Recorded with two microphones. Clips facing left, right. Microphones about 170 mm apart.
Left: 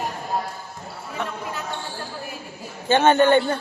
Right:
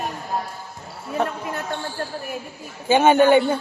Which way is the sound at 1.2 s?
35° right (ahead or behind).